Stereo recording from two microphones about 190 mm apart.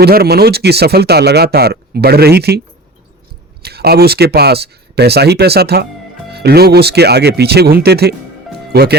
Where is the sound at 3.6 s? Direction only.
55° right (ahead or behind).